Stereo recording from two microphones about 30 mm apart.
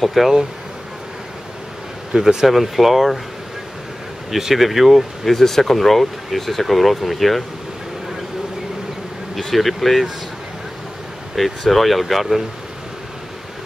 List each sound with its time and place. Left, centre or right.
0.0 s speech: centre
2.1 s speech: right
2.4 s speech: centre
4.3 s speech: centre
5.2 s speech: centre
9.4 s speech: centre
11.3 s speech: centre